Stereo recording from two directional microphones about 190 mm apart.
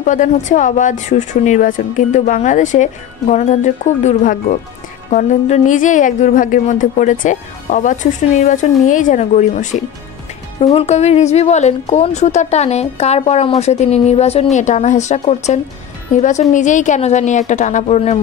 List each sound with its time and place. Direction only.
0.0 s a woman's voice: 40° left (ahead or behind)